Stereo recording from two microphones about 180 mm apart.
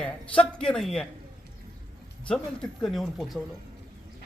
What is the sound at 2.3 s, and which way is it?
Speech, 5° left (ahead or behind).